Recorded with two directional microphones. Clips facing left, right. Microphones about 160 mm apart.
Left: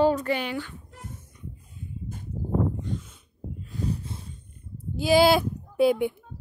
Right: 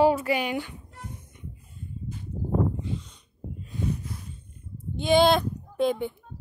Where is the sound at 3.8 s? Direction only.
30° left (ahead or behind).